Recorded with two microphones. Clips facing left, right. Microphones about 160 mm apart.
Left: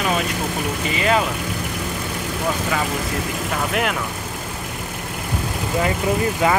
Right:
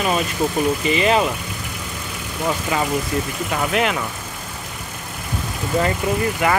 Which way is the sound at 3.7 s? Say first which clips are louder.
Right 3 dB; 5° left (ahead or behind).